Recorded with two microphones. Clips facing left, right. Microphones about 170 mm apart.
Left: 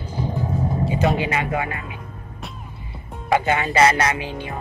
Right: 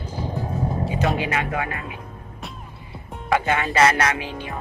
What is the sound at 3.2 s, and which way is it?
Speech, 5° left (ahead or behind).